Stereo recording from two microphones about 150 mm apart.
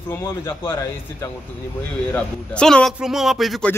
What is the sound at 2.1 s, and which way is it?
Speech, 5° left (ahead or behind).